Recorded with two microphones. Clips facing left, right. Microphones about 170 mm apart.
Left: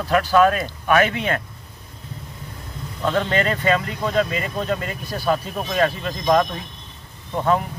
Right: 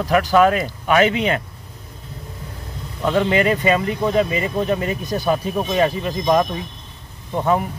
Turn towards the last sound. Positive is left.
turn(degrees=-15)  # may be behind; listen again after turning